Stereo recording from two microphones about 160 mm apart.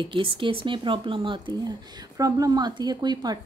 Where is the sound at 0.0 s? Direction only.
30° right (ahead or behind).